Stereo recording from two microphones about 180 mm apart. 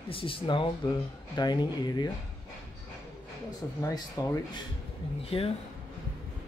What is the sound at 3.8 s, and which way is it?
Speech, 20° left (ahead or behind).